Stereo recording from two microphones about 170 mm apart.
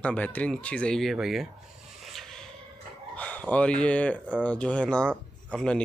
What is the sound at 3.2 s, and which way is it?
Speech, 10° left (ahead or behind).